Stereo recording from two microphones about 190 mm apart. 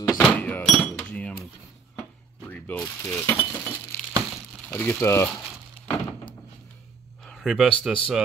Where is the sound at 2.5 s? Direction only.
10° left (ahead or behind).